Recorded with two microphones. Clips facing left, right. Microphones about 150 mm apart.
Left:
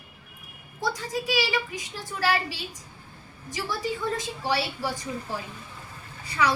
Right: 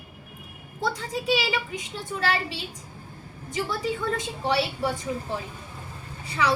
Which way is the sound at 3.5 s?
30° right (ahead or behind).